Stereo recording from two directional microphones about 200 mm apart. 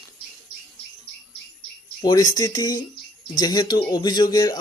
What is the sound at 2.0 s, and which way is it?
Speech, 20° left (ahead or behind).